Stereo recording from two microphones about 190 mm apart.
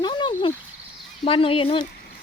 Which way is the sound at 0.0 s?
25° left (ahead or behind).